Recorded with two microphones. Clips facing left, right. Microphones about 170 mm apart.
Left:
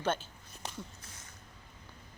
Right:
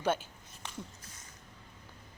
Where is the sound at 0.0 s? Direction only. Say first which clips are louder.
Right 2 dB; 10° right (ahead or behind).